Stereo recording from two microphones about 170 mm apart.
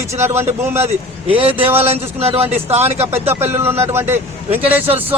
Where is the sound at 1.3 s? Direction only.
35° right (ahead or behind).